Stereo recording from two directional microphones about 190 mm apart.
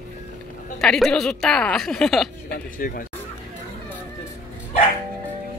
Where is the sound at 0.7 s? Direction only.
Centre (ahead or behind).